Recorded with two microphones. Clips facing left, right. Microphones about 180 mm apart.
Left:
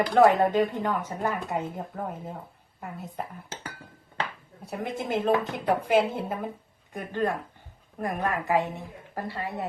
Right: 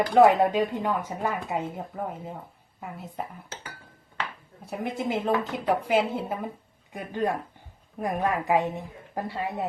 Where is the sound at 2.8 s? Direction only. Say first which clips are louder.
Even; centre (ahead or behind).